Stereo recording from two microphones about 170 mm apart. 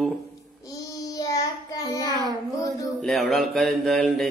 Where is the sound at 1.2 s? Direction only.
20° left (ahead or behind).